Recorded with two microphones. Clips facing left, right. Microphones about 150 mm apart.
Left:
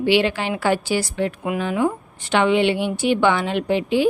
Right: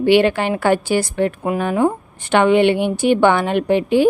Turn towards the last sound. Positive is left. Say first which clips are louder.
# right 4 dB
turn(degrees=-50)  # may be behind; listen again after turning